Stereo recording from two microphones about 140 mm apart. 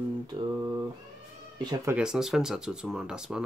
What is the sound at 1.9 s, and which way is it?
Speech, 5° right (ahead or behind).